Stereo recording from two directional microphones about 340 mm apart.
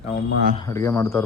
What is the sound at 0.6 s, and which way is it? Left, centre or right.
Speech, centre.